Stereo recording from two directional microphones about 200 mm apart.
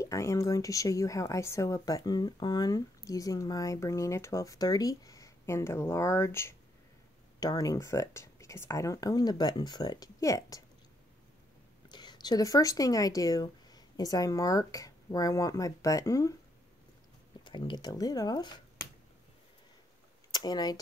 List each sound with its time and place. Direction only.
0.0 s a woman's voice: 15° left (ahead or behind)
11.9 s speech: 20° left (ahead or behind)
17.4 s speech: 25° left (ahead or behind)
20.3 s speech: 20° left (ahead or behind)